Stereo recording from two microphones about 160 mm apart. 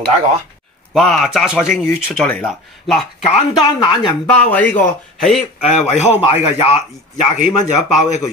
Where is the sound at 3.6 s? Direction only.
30° left (ahead or behind).